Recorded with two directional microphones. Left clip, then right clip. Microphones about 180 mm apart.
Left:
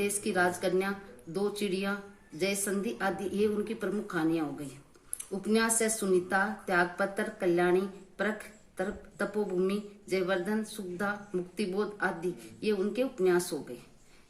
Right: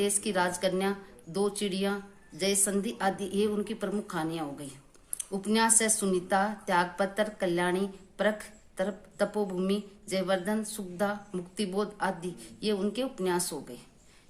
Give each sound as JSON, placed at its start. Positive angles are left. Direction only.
{"t": 0.0, "sound": "a woman's voice", "side_deg": -40}
{"t": 8.8, "sound": "a woman's voice", "side_deg": -40}